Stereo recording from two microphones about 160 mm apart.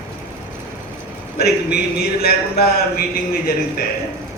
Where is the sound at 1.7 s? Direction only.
75° left (ahead or behind).